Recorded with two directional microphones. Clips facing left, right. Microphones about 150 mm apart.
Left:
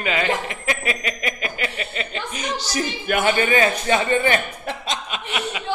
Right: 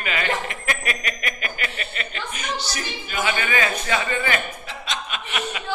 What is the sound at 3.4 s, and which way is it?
Speech, 30° left (ahead or behind).